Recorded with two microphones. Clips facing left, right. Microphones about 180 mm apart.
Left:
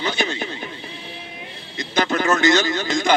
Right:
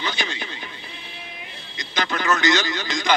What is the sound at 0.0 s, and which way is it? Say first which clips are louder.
Radio: left 5 dB; 50° left (ahead or behind).